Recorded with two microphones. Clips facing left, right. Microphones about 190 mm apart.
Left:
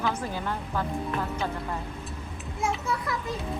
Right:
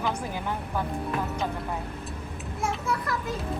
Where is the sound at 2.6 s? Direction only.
Centre (ahead or behind).